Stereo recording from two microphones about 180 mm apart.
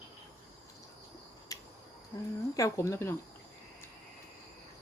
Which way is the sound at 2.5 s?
15° left (ahead or behind).